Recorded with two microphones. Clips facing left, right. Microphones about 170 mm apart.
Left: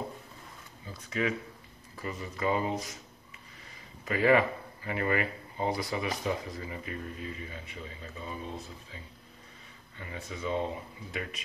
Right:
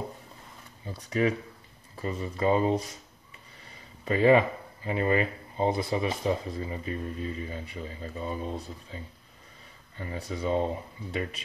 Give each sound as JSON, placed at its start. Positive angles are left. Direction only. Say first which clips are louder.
{"t": 0.9, "sound": "speech", "louder": "right 5 dB", "side_deg": -35}
{"t": 4.0, "sound": "speech", "louder": "right 4 dB", "side_deg": -30}